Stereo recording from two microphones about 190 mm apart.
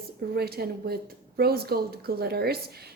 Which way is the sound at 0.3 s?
55° right (ahead or behind).